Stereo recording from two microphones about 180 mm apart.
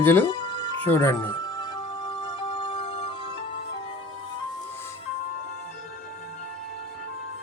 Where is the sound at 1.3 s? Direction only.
25° left (ahead or behind).